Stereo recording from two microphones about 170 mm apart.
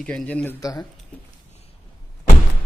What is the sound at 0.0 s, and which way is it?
Speech, 5° left (ahead or behind).